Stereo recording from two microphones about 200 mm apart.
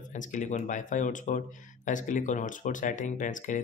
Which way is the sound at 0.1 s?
40° left (ahead or behind).